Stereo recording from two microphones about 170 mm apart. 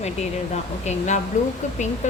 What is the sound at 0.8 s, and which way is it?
Speech, 45° left (ahead or behind).